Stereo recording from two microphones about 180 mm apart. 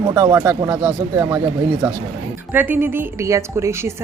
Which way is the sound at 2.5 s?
10° right (ahead or behind).